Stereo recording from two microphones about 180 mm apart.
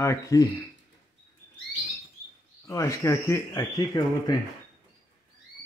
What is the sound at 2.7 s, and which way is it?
Speech, 15° left (ahead or behind).